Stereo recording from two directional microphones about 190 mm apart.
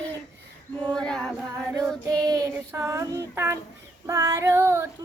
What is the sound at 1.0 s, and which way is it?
Music, 5° left (ahead or behind).